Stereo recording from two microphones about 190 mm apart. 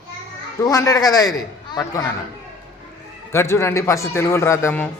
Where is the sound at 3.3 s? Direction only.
15° left (ahead or behind).